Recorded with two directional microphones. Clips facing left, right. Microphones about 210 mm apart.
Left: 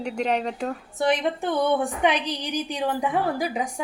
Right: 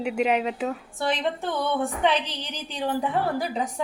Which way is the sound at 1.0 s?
15° left (ahead or behind).